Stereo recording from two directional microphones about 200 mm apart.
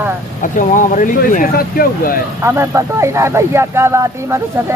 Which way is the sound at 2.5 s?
15° right (ahead or behind).